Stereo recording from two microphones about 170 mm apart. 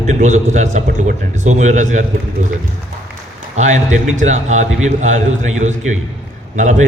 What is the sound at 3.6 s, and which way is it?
A man's voice, 45° right (ahead or behind).